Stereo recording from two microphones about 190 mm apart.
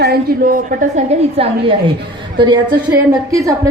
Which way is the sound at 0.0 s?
50° right (ahead or behind).